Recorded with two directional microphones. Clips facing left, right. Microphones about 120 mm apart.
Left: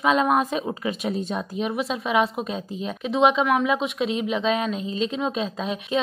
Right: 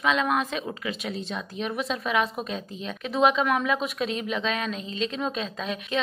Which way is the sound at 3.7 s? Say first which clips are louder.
Left 3 dB; 20° left (ahead or behind).